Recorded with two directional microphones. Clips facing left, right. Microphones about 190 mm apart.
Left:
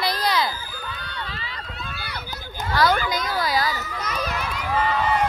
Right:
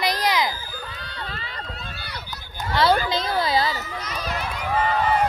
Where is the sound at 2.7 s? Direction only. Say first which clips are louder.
Right 1 dB; 30° right (ahead or behind).